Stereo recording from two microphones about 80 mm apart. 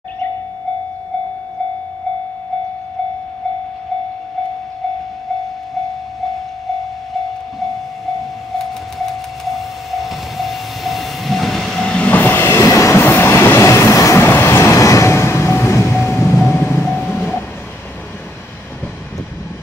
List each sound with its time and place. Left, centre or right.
8.2 s vehicle: centre
12.1 s train: left
12.4 s train: left
12.9 s train: left
16.4 s vehicle: left